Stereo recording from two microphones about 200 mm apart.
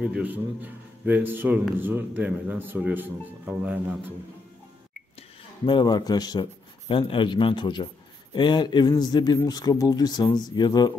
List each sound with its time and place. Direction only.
0.0 s a man's voice: 5° right (ahead or behind)
5.7 s speech: 20° left (ahead or behind)